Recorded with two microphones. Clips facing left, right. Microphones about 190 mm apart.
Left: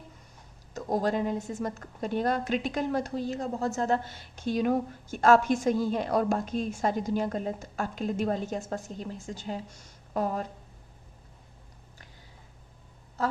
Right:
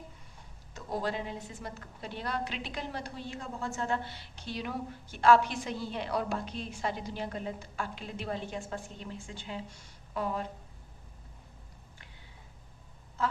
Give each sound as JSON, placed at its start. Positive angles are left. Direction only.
{"t": 0.7, "sound": "a woman's voice", "side_deg": 45}
{"t": 13.2, "sound": "speech", "side_deg": 40}